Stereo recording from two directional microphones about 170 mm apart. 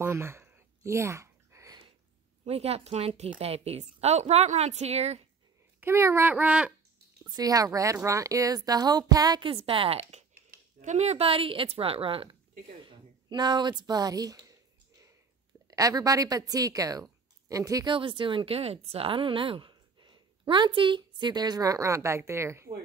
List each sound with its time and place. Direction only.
0.0 s a sound: 15° right (ahead or behind)
2.4 s a woman's voice: 40° right (ahead or behind)
5.8 s speech: 15° right (ahead or behind)
7.2 s a woman's voice: 20° right (ahead or behind)
12.8 s a sound: 25° right (ahead or behind)
15.7 s speech: 20° right (ahead or behind)